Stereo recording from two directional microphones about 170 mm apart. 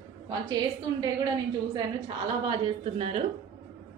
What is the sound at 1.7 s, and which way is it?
A woman's voice, 30° right (ahead or behind).